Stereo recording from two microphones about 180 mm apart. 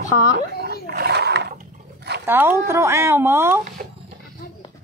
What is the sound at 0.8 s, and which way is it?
Roaring cats, 65° right (ahead or behind).